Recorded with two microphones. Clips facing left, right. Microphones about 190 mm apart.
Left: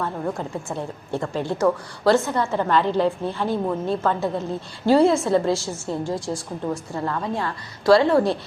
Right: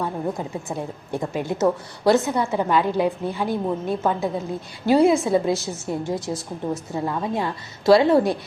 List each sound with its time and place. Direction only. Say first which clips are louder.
0.0 s a woman's voice: right 1 dB; 15° right (ahead or behind)